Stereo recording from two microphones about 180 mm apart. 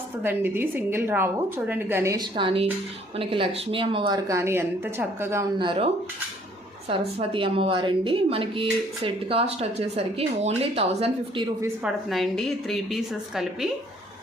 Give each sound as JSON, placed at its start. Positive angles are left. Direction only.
{"t": 0.2, "sound": "a woman's voice", "side_deg": -10}
{"t": 2.3, "sound": "speech", "side_deg": -30}
{"t": 5.5, "sound": "speech", "side_deg": -30}
{"t": 12.0, "sound": "a woman's voice", "side_deg": 0}